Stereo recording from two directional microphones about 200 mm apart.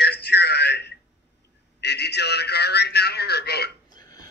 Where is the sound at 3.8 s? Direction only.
20° left (ahead or behind).